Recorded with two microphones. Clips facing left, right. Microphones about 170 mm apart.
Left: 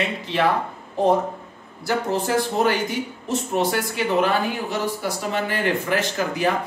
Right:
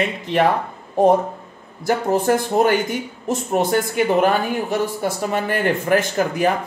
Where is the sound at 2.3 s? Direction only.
50° right (ahead or behind).